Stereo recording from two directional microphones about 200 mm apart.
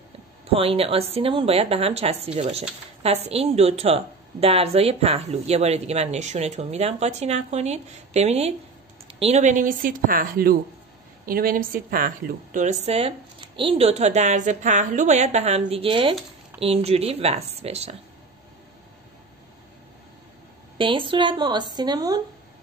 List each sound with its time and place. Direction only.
0.5 s a woman's voice: 30° right (ahead or behind); by 12.1 s 45° right (ahead or behind)
12.5 s a woman's voice: 35° right (ahead or behind)
20.7 s speech: 25° right (ahead or behind)